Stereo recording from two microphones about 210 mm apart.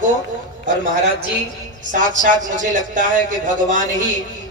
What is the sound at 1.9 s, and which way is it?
Speech, 40° right (ahead or behind).